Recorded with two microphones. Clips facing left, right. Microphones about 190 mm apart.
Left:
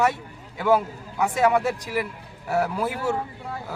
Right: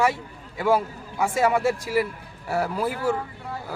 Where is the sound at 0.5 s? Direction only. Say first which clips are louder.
Left 1 dB; centre (ahead or behind).